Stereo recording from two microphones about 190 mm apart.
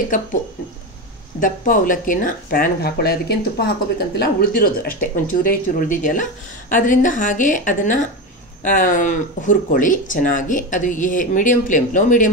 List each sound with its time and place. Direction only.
1.4 s speech: 45° left (ahead or behind)